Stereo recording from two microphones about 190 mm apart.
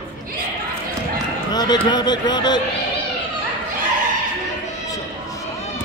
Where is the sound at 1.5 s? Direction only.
20° left (ahead or behind).